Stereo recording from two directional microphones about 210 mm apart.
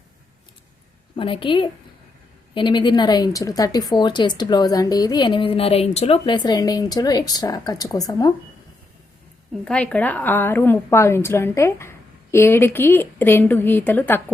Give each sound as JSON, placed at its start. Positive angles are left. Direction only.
{"t": 1.1, "sound": "speech", "side_deg": 25}
{"t": 9.6, "sound": "a woman's voice", "side_deg": 5}